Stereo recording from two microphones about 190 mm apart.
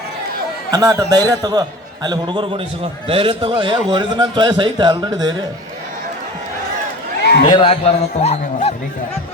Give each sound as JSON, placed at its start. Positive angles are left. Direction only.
{"t": 0.7, "sound": "a man's voice", "side_deg": -15}
{"t": 7.2, "sound": "a sound", "side_deg": 60}
{"t": 7.4, "sound": "a man's voice", "side_deg": 25}